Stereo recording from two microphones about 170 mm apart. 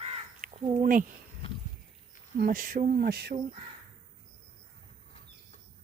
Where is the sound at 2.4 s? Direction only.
55° right (ahead or behind).